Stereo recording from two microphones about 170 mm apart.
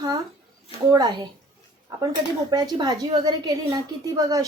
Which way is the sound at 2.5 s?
25° right (ahead or behind).